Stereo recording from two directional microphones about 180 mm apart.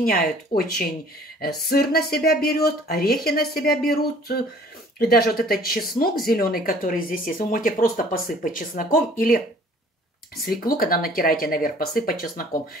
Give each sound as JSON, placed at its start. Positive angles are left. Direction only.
{"t": 0.0, "sound": "speech", "side_deg": 55}
{"t": 10.4, "sound": "speech", "side_deg": 55}